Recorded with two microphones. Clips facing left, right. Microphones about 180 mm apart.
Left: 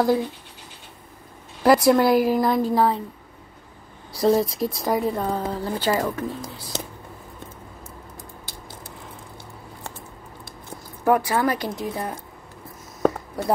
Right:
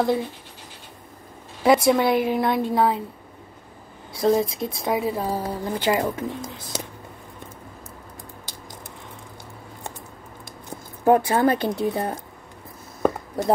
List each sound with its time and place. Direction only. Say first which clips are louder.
0.0 s speech: left 2 dB; centre (ahead or behind)
1.6 s speech: left 1 dB; centre (ahead or behind)
4.1 s speech: left 1 dB; centre (ahead or behind); by 6.3 s 20° right (ahead or behind)
11.1 s speech: right 3 dB; 25° right (ahead or behind)